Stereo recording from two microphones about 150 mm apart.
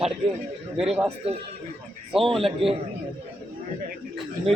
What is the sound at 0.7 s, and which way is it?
Speech, 5° right (ahead or behind).